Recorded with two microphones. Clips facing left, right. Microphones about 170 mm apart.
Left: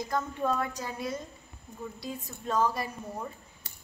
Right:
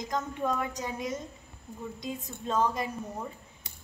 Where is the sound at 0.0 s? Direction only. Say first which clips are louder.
Left 1 dB; 15° right (ahead or behind).